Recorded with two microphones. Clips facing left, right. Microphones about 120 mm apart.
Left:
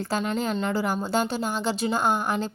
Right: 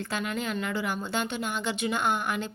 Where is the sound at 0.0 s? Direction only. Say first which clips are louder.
Left 5 dB; 35° left (ahead or behind).